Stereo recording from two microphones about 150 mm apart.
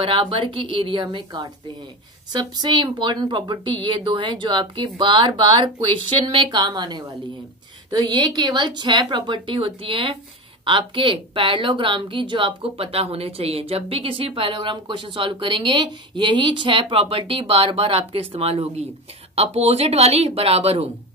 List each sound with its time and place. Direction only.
0.0 s a woman's voice: 35° right (ahead or behind)